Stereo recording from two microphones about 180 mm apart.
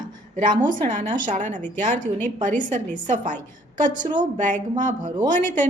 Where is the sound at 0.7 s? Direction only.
45° right (ahead or behind).